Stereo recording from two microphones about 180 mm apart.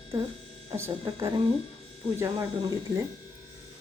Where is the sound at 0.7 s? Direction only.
15° right (ahead or behind).